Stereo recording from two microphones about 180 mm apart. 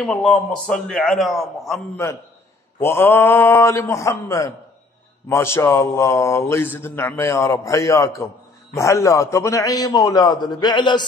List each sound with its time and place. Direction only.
0.0 s a man's voice: 5° left (ahead or behind)
2.0 s a man's voice: 15° left (ahead or behind)